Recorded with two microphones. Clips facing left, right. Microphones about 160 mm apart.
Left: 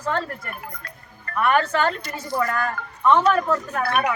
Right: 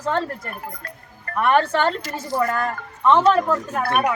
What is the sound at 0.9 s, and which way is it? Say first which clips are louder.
Music: right 3 dB; 35° right (ahead or behind).